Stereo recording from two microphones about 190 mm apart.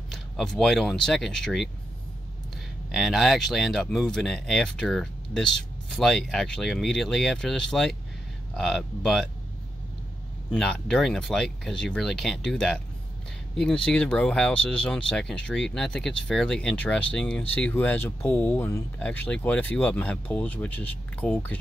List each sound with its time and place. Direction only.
0.1 s speech: centre (ahead or behind)
2.9 s speech: centre (ahead or behind)
10.5 s speech: 5° left (ahead or behind)
13.8 s speech: 5° left (ahead or behind)